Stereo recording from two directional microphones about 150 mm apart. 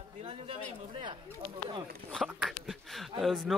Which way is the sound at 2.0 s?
90° right.